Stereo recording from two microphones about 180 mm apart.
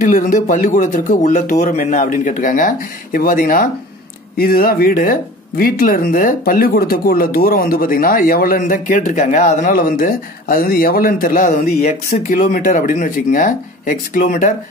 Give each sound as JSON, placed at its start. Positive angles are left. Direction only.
{"t": 0.0, "sound": "speech", "side_deg": 45}